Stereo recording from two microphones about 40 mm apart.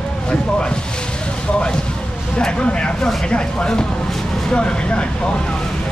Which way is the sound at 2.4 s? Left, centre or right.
Left.